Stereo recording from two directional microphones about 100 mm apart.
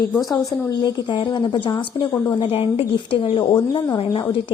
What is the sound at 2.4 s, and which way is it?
A woman's voice, 70° left (ahead or behind).